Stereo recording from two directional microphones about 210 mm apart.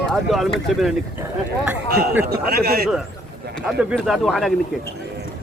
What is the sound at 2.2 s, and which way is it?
Speech, 45° right (ahead or behind).